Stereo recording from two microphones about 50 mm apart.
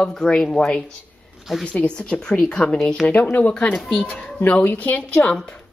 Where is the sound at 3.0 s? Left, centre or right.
Left.